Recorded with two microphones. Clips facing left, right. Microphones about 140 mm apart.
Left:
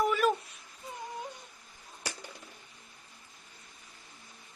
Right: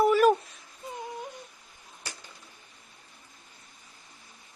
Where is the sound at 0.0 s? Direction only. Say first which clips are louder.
Right 7 dB; 40° right (ahead or behind).